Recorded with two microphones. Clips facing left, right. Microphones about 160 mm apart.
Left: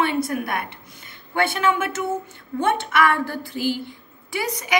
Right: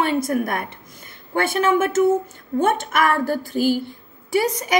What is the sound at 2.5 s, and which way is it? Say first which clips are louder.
Speech: right 5 dB; 35° right (ahead or behind).